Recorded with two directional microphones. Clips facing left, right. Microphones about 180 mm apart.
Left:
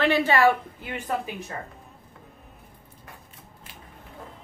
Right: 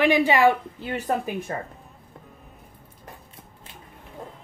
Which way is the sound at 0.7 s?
35° right (ahead or behind).